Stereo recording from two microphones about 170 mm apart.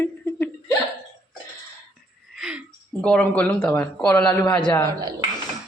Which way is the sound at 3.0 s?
5° left (ahead or behind).